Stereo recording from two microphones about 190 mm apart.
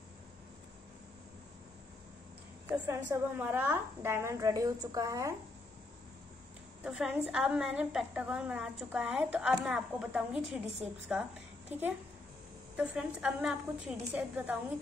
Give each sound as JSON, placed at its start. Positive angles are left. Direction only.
{"t": 2.7, "sound": "a woman's voice", "side_deg": -10}
{"t": 6.8, "sound": "a woman's voice", "side_deg": -5}
{"t": 12.7, "sound": "a woman's voice", "side_deg": -5}